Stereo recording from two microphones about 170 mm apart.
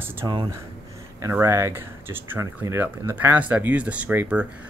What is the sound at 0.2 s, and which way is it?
Speech, 20° right (ahead or behind).